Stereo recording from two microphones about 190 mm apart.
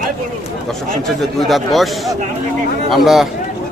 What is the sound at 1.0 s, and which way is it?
Speech, centre (ahead or behind).